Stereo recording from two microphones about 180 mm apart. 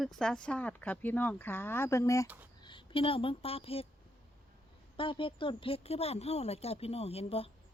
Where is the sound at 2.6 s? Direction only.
25° left (ahead or behind).